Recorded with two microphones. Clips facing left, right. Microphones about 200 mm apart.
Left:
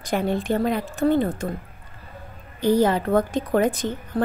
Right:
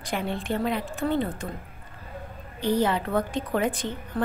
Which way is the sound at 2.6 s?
40° left (ahead or behind).